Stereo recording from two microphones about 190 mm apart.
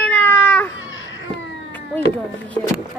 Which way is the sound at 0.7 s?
90° left.